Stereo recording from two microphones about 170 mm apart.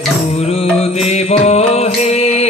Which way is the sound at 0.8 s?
40° left (ahead or behind).